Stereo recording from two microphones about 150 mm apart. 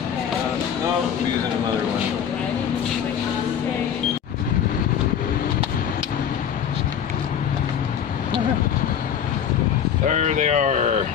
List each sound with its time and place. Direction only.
10.0 s speech: 55° right (ahead or behind)